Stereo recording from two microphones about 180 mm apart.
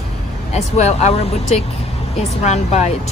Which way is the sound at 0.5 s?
35° left (ahead or behind).